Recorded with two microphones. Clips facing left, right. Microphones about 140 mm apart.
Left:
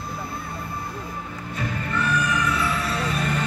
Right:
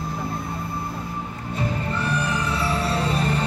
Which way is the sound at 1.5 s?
30° right (ahead or behind).